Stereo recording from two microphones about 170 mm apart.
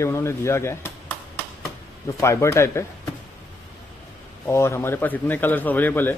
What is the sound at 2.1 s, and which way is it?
Speech, 15° left (ahead or behind).